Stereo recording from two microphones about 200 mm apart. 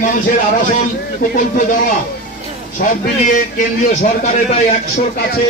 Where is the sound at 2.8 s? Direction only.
40° left (ahead or behind).